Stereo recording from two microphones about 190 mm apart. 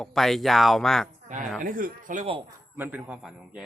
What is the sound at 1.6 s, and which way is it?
Speech, 45° right (ahead or behind).